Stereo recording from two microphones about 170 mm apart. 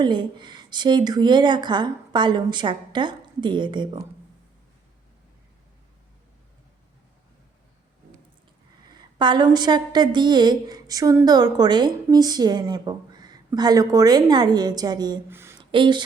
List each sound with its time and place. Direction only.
0.0 s speech: 25° right (ahead or behind)
8.9 s speech: 25° right (ahead or behind)
15.3 s a sound: 15° right (ahead or behind)
15.7 s speech: 30° right (ahead or behind)